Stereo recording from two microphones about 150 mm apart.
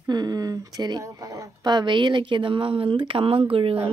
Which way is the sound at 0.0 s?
25° right (ahead or behind).